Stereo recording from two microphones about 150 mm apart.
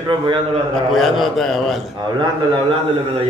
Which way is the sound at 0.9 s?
Centre (ahead or behind).